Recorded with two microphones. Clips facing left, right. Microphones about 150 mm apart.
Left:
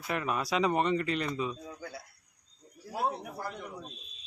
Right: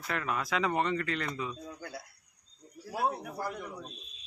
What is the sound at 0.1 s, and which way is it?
Speech, 20° left (ahead or behind).